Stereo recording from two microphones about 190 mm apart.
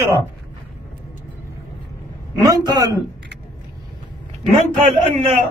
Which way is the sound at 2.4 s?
20° right (ahead or behind).